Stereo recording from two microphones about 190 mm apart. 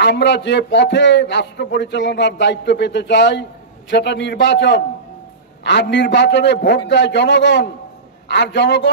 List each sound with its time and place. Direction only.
0.0 s a man's voice: 65° left (ahead or behind)